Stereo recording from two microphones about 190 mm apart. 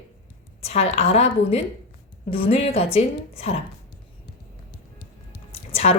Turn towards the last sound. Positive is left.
turn(degrees=35)  # may be behind; listen again after turning